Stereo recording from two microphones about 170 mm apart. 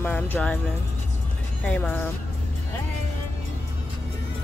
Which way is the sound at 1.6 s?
10° left (ahead or behind).